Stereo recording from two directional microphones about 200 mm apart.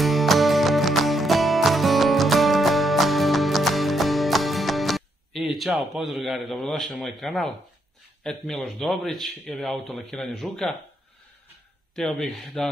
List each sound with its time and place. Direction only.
0.0 s music: centre (ahead or behind)
8.2 s a man's voice: centre (ahead or behind)
11.9 s a man's voice: centre (ahead or behind)